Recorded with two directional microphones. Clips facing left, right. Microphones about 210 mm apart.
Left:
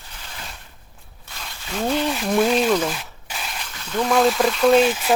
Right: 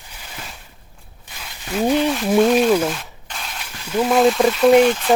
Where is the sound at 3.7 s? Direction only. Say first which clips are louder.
Right 4 dB; 10° right (ahead or behind).